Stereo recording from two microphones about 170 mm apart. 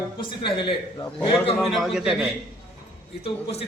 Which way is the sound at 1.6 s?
Centre (ahead or behind).